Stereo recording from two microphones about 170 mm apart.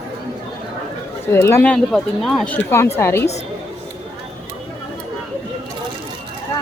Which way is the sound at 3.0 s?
15° left (ahead or behind).